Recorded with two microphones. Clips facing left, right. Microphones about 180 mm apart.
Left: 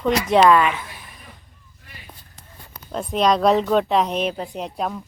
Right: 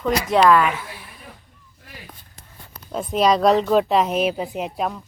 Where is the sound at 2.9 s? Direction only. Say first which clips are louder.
Right 1 dB; centre (ahead or behind).